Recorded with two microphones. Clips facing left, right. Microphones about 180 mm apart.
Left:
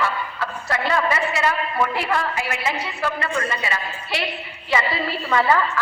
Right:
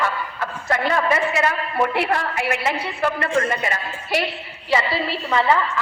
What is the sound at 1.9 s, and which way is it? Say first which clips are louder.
A woman's voice: right 1 dB; 60° right (ahead or behind).